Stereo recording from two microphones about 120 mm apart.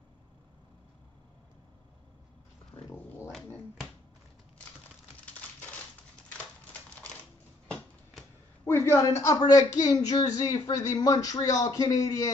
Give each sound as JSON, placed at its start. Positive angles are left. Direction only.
{"t": 2.7, "sound": "dog", "side_deg": 35}
{"t": 7.6, "sound": "a sound", "side_deg": 5}
{"t": 8.6, "sound": "a man's voice", "side_deg": 20}